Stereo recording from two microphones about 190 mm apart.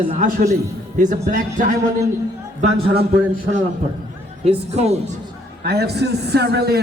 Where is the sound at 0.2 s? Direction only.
45° right (ahead or behind).